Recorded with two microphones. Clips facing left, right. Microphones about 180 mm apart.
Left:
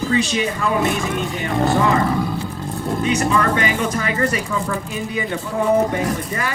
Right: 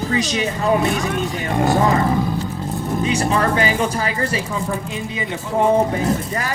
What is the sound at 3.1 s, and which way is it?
Speech, 30° right (ahead or behind).